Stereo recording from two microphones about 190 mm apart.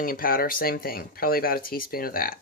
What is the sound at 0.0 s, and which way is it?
Speech, 50° left (ahead or behind).